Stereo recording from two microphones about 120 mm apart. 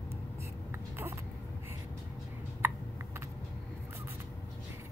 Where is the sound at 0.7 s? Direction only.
20° right (ahead or behind).